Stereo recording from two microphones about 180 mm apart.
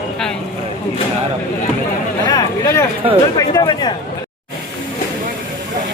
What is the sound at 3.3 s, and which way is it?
Speech, 20° left (ahead or behind).